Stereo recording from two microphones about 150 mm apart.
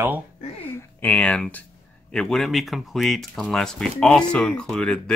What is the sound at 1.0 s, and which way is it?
Speech, 10° left (ahead or behind).